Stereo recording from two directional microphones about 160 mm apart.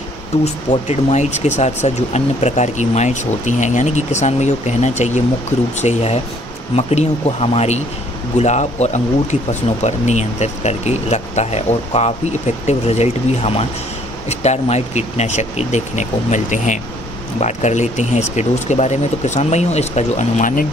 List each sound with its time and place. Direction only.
0.7 s speech: 45° left (ahead or behind)